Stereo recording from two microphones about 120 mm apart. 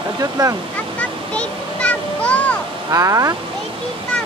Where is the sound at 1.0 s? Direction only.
10° left (ahead or behind).